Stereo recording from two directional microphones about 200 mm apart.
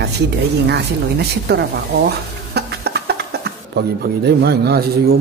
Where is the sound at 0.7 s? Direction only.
55° right (ahead or behind).